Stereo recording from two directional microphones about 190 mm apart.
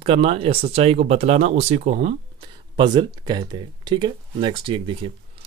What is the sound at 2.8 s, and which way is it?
Speech, 25° right (ahead or behind).